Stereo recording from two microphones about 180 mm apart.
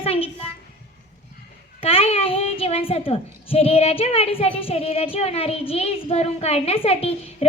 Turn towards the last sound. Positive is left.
turn(degrees=35)  # may be behind; listen again after turning